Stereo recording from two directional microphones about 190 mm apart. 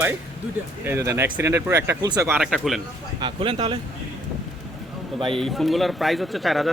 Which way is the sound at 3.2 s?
30° right (ahead or behind).